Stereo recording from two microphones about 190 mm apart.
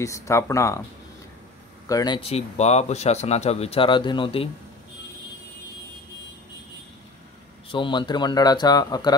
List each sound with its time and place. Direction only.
0.0 s speech: 15° left (ahead or behind)
1.9 s a man's voice: 20° left (ahead or behind)
7.7 s a man's voice: 25° left (ahead or behind)